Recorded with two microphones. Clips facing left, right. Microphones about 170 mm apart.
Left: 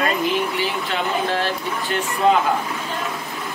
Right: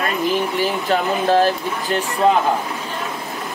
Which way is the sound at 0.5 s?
40° right (ahead or behind).